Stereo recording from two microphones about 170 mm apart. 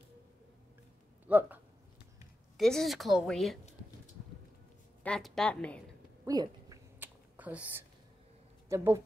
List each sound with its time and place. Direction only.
1.2 s speech: 10° right (ahead or behind)
2.5 s a woman's voice: centre (ahead or behind)
5.0 s a woman's voice: 5° left (ahead or behind)
6.2 s a sound: 20° right (ahead or behind)
7.0 s a sound: 10° right (ahead or behind)
8.6 s speech: 15° right (ahead or behind)